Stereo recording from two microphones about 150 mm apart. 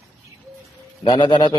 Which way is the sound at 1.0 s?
30° left (ahead or behind).